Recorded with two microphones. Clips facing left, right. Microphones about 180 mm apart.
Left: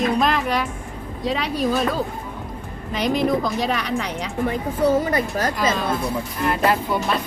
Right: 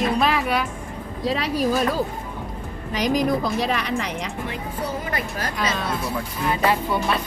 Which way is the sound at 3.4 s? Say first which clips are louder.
Even; centre (ahead or behind).